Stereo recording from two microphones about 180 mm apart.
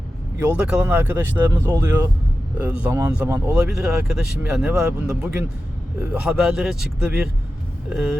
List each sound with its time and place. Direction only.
0.3 s speech: 10° right (ahead or behind)
3.5 s speech: 5° right (ahead or behind)